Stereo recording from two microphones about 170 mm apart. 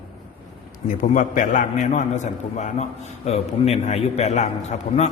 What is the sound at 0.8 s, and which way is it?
A man's voice, 50° left (ahead or behind).